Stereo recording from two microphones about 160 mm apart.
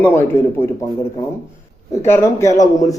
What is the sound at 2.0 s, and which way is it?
Speech, 15° left (ahead or behind).